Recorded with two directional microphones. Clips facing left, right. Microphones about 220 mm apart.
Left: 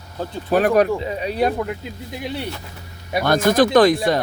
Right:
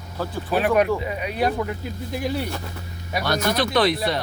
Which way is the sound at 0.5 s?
40° left (ahead or behind).